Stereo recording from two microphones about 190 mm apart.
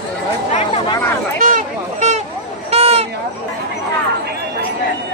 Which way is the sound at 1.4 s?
40° right (ahead or behind).